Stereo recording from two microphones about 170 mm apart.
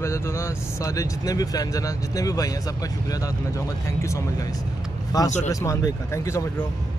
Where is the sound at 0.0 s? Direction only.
15° left (ahead or behind).